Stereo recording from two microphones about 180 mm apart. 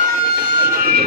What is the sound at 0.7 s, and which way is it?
Train, 50° right (ahead or behind).